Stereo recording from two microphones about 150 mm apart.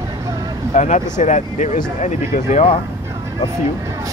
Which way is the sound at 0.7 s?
55° left (ahead or behind).